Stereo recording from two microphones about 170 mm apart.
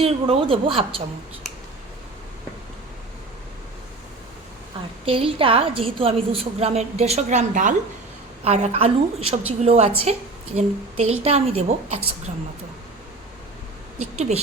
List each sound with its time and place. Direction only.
0.0 s a woman's voice: 35° right (ahead or behind)
5.0 s a woman's voice: 30° right (ahead or behind)
14.2 s a woman's voice: 40° right (ahead or behind)